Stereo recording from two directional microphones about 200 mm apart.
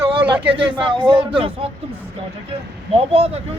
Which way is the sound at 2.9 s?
30° right (ahead or behind).